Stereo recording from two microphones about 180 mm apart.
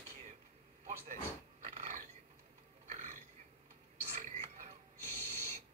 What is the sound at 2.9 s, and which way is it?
Burping, 45° right (ahead or behind).